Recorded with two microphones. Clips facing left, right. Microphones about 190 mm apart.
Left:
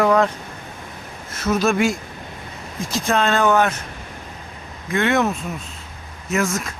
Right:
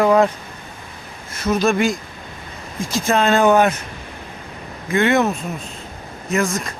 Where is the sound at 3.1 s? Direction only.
5° right (ahead or behind).